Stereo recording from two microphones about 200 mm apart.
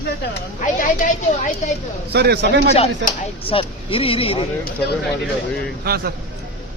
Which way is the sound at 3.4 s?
25° left (ahead or behind).